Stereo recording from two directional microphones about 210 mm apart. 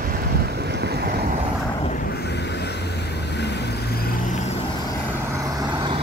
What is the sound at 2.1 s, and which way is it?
Vehicle, 50° left (ahead or behind).